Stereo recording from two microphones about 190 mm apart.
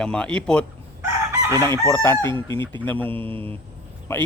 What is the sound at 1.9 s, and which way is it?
Speech, 15° left (ahead or behind).